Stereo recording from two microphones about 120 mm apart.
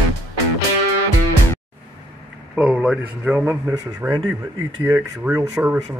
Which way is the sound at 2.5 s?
5° right (ahead or behind).